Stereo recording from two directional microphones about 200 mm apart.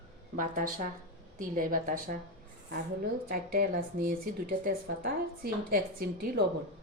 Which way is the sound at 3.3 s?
50° right (ahead or behind).